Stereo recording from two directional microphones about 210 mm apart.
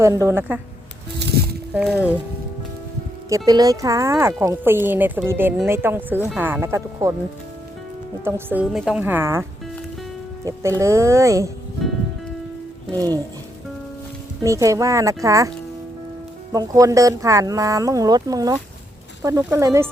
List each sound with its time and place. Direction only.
0.0 s speech: 15° right (ahead or behind)
1.7 s speech: 5° right (ahead or behind)
3.2 s speech: 15° right (ahead or behind)
8.2 s speech: 10° right (ahead or behind)
14.4 s speech: 15° right (ahead or behind)